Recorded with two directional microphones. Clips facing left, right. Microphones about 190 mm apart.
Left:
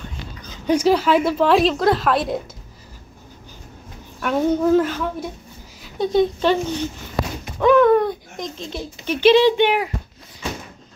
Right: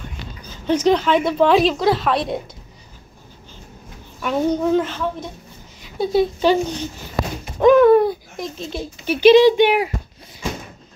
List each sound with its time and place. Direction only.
0.7 s a woman's voice: 10° left (ahead or behind)
4.2 s a woman's voice: centre (ahead or behind)
7.5 s a sound: 15° right (ahead or behind)
8.7 s speech: 10° right (ahead or behind)